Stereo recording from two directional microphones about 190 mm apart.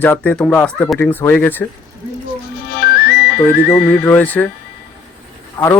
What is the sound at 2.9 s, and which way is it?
Music, 55° left (ahead or behind).